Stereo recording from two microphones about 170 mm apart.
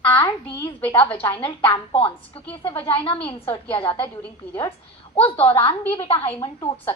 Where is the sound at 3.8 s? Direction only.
30° left (ahead or behind).